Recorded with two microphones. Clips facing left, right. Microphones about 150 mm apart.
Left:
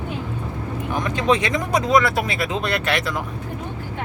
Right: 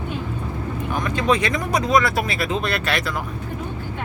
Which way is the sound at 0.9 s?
20° left (ahead or behind).